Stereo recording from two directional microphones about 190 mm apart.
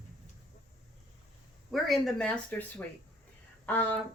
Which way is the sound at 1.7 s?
Centre (ahead or behind).